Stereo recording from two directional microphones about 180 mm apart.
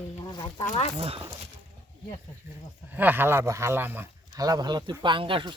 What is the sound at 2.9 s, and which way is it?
Speech, 10° right (ahead or behind).